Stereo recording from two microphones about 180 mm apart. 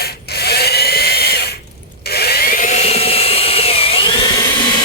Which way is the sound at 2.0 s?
60° left (ahead or behind).